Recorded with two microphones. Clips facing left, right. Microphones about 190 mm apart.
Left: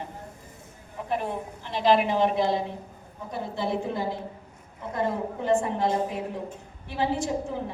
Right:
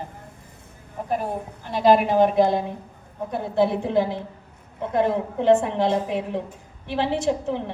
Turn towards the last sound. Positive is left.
turn(degrees=-75)  # may be behind; listen again after turning